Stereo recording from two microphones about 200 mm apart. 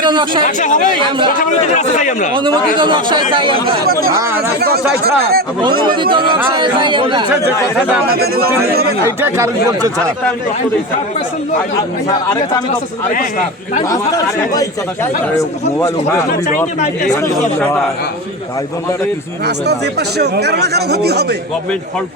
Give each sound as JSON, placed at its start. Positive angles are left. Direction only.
{"t": 0.0, "sound": "speech", "side_deg": -25}
{"t": 0.4, "sound": "a man's voice", "side_deg": 40}
{"t": 2.7, "sound": "speech", "side_deg": -25}
{"t": 4.6, "sound": "speech", "side_deg": -50}
{"t": 5.9, "sound": "speech", "side_deg": -25}
{"t": 8.0, "sound": "speech", "side_deg": -50}
{"t": 9.0, "sound": "speech", "side_deg": -15}
{"t": 12.0, "sound": "a man's voice", "side_deg": 15}
{"t": 13.9, "sound": "a man's voice", "side_deg": 15}
{"t": 17.3, "sound": "a man's voice", "side_deg": 5}
{"t": 19.5, "sound": "speech", "side_deg": -55}